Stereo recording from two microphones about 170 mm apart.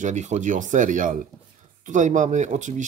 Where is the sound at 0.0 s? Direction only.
45° right (ahead or behind).